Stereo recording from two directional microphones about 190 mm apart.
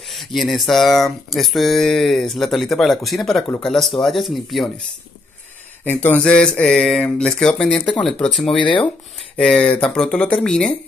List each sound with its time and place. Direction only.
0.1 s speech: centre (ahead or behind)
5.9 s speech: 10° left (ahead or behind)
8.5 s speech: 25° left (ahead or behind)
9.4 s speech: 5° left (ahead or behind)